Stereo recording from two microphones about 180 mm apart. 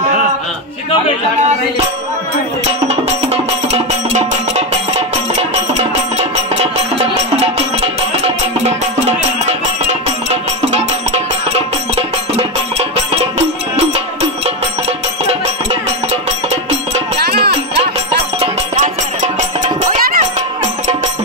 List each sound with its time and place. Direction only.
2.9 s music: 35° right (ahead or behind)
10.3 s music: 40° right (ahead or behind)
17.2 s music: 60° right (ahead or behind)
17.5 s music: 35° right (ahead or behind)